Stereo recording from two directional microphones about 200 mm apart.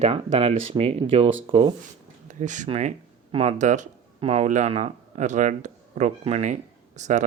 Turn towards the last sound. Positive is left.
turn(degrees=-35)  # may be behind; listen again after turning